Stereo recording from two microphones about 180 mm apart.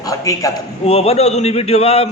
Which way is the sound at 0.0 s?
20° left (ahead or behind).